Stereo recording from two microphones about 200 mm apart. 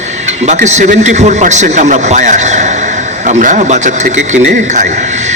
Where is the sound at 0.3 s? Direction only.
35° right (ahead or behind).